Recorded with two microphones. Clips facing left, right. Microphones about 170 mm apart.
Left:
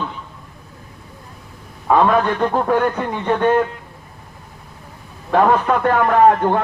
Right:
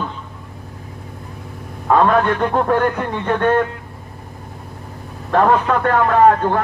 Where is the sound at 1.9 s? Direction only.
5° left (ahead or behind).